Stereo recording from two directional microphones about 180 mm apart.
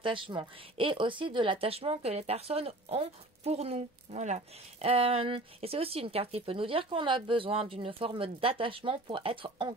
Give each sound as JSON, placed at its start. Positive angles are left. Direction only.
{"t": 0.0, "sound": "speech", "side_deg": -25}